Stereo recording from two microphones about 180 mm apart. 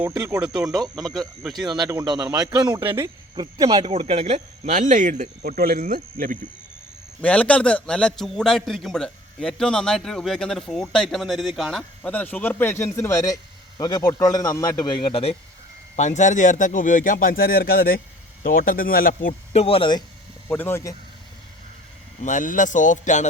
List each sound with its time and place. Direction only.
0.1 s speech: 15° right (ahead or behind)
0.4 s a man's voice: 5° right (ahead or behind)
1.6 s speech: 25° right (ahead or behind); by 5.3 s 45° right (ahead or behind)
5.4 s speech: 55° right (ahead or behind)
7.2 s a man's voice: 5° left (ahead or behind); by 19.3 s 55° left (ahead or behind)
19.5 s speech: 30° left (ahead or behind)
20.5 s speech: 10° left (ahead or behind)
22.2 s speech: 45° left (ahead or behind)